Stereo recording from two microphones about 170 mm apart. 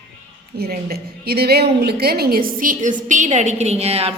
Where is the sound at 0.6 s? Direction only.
65° right (ahead or behind).